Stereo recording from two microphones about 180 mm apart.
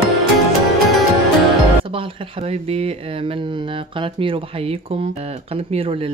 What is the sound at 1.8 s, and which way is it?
Speech, 30° right (ahead or behind).